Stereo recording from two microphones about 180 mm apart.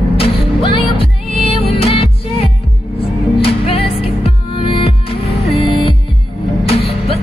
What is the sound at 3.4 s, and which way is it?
Music, 30° left (ahead or behind).